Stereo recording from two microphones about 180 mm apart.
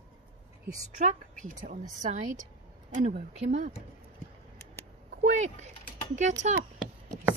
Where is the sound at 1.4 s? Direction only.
45° right (ahead or behind).